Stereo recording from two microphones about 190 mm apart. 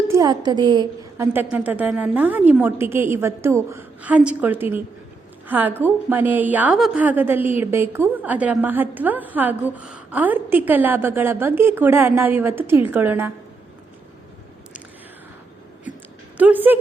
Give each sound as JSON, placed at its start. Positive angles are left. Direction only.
{"t": 0.1, "sound": "a woman's voice", "side_deg": -20}
{"t": 1.3, "sound": "a woman's voice", "side_deg": -10}
{"t": 16.4, "sound": "a woman's voice", "side_deg": -10}